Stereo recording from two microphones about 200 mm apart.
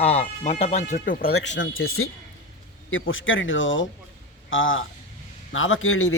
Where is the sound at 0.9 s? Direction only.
45° left (ahead or behind).